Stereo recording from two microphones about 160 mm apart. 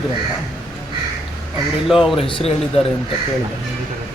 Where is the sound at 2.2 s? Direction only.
35° left (ahead or behind).